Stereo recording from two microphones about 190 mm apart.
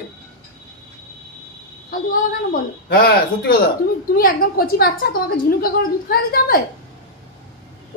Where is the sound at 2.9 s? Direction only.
55° left (ahead or behind).